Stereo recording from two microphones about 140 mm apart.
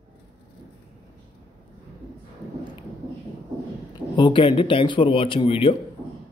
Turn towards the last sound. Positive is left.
turn(degrees=40)  # may be behind; listen again after turning